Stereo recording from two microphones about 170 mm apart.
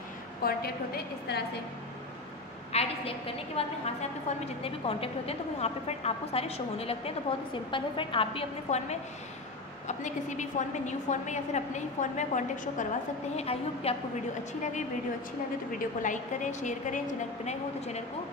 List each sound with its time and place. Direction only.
0.4 s a woman's voice: 65° left (ahead or behind)
2.7 s a woman's voice: 35° left (ahead or behind)
13.4 s a woman's voice: 35° left (ahead or behind)